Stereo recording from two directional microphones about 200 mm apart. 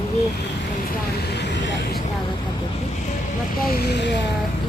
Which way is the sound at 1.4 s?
60° left (ahead or behind).